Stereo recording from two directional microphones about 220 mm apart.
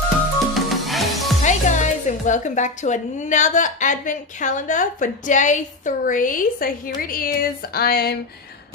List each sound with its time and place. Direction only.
0.6 s music: centre (ahead or behind)
1.4 s a woman's voice: 35° left (ahead or behind)